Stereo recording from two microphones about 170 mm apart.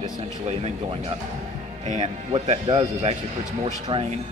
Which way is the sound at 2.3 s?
40° right (ahead or behind).